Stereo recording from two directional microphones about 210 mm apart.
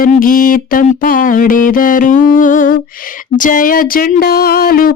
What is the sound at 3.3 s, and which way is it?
Speech, 40° left (ahead or behind).